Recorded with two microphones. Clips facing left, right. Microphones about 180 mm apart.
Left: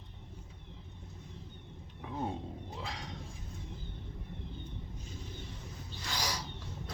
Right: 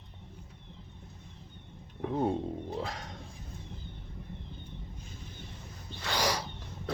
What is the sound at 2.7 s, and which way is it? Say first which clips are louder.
Speech: right 6 dB; 45° right (ahead or behind).